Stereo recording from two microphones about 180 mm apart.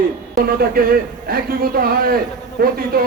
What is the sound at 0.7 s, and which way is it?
A man's voice, 55° right (ahead or behind).